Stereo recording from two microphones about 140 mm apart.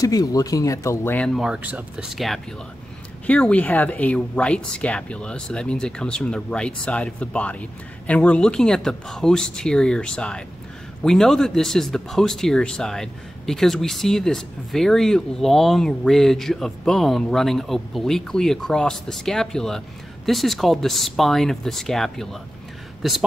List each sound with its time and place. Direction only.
0.0 s speech: 25° left (ahead or behind)
1.1 s speech: 5° left (ahead or behind)